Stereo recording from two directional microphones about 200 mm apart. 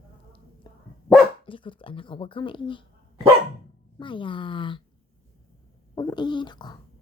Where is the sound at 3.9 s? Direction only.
25° left (ahead or behind).